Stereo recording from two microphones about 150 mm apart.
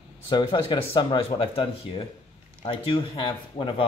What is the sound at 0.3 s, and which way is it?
Speech, 30° left (ahead or behind).